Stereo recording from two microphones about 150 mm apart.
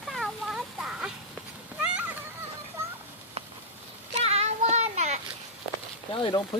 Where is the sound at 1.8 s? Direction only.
5° right (ahead or behind).